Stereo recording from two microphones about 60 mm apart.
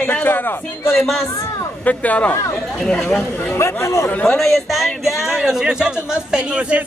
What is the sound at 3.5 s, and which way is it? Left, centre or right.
Speech, left.